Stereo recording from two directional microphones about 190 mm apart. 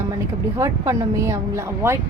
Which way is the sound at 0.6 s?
15° right (ahead or behind).